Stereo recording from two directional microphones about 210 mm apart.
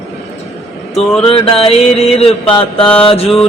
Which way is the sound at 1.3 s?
25° left (ahead or behind).